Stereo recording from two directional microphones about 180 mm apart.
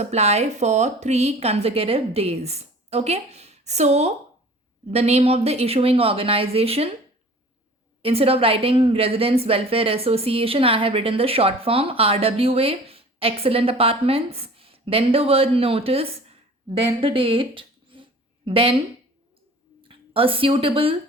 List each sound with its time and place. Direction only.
0.0 s a woman's voice: 35° right (ahead or behind)
8.0 s a woman's voice: 35° right (ahead or behind)
19.8 s speech: 30° right (ahead or behind)